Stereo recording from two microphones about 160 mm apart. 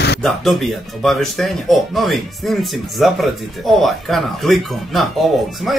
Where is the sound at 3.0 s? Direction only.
Centre (ahead or behind).